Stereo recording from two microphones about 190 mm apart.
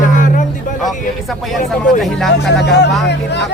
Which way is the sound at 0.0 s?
45° left (ahead or behind).